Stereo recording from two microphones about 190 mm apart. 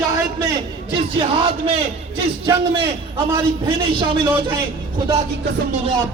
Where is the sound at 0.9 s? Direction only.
30° right (ahead or behind).